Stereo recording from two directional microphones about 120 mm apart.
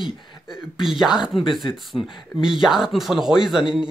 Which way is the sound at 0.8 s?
5° right (ahead or behind).